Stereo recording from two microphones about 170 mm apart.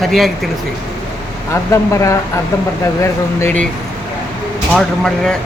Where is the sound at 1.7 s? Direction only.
20° left (ahead or behind).